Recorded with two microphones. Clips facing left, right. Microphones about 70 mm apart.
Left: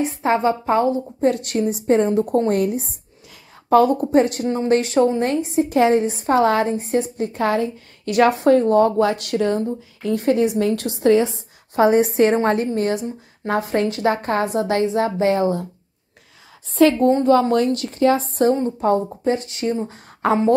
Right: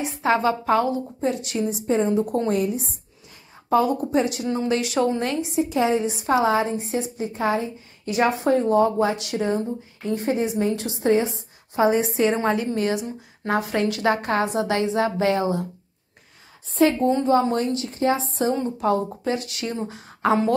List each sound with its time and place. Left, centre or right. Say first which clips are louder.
0.0 s speech: left 2 dB; left
1.2 s a woman's voice: left 6 dB; left
11.7 s a woman's voice: left 4 dB; left
12.4 s speech: left 3 dB; left
16.7 s speech: left 4 dB; left
17.3 s speech: left 4 dB; left
18.6 s speech: left 3 dB; left
20.2 s speech: left 3 dB; left